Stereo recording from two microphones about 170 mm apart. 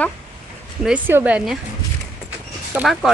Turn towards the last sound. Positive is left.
turn(degrees=0)  # may be behind; listen again after turning